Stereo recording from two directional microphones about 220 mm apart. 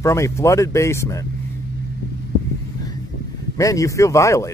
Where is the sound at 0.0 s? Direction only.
15° left (ahead or behind).